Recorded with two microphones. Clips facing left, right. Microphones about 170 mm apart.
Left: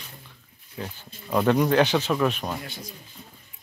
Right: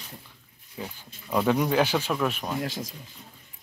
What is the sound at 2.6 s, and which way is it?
Speech, 90° right.